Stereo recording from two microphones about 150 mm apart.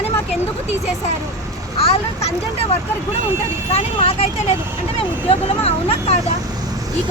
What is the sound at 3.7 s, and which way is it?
Speech, 40° left (ahead or behind).